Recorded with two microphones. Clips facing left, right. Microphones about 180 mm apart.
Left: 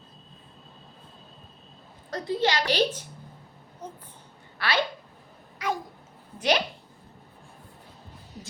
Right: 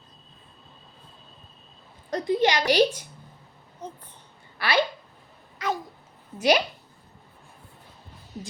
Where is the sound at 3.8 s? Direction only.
10° left (ahead or behind).